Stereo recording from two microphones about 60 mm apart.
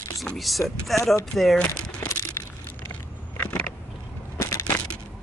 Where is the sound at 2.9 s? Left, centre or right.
Left.